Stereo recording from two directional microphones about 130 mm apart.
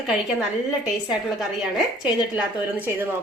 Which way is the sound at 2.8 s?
15° right (ahead or behind).